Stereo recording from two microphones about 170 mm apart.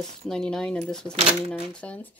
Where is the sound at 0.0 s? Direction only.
5° left (ahead or behind).